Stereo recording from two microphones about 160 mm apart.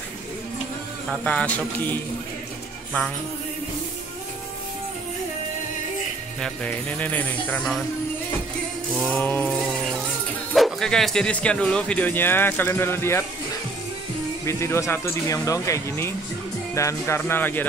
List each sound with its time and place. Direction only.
1.2 s speech: 10° left (ahead or behind)
6.4 s speech: 10° left (ahead or behind)
9.1 s a sound: 10° left (ahead or behind)
10.5 s speech: centre (ahead or behind)
14.4 s speech: 15° left (ahead or behind)